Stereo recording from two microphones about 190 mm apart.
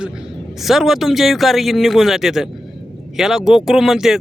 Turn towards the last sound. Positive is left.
turn(degrees=0)  # may be behind; listen again after turning